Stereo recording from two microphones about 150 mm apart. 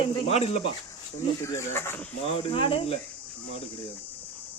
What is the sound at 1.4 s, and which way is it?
Speech, 20° left (ahead or behind).